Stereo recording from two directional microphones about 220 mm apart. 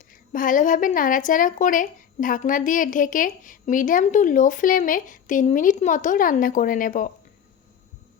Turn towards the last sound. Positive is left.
turn(degrees=35)  # may be behind; listen again after turning